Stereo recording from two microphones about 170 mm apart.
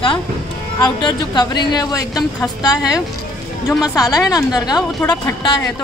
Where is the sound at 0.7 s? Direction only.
25° left (ahead or behind).